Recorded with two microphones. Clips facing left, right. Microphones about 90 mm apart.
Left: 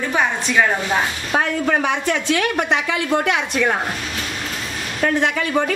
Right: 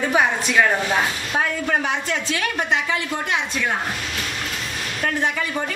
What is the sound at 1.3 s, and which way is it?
A woman's voice, 65° left (ahead or behind).